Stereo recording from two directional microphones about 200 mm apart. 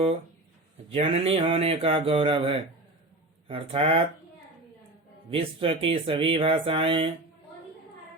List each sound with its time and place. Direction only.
0.9 s speech: 30° right (ahead or behind)
5.3 s speech: 25° right (ahead or behind)